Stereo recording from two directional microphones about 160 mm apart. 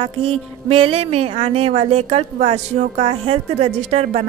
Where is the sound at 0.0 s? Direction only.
35° right (ahead or behind).